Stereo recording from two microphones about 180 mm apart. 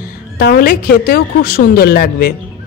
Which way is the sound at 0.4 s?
60° left (ahead or behind).